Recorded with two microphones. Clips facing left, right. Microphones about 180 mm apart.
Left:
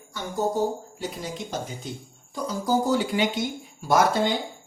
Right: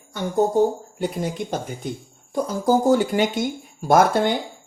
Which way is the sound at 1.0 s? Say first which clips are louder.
Right 7 dB; 55° right (ahead or behind).